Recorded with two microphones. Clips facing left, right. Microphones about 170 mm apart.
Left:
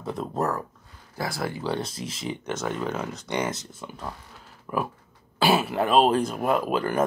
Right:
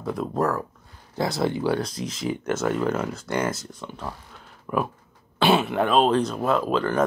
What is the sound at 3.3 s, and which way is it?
Speech, 20° left (ahead or behind).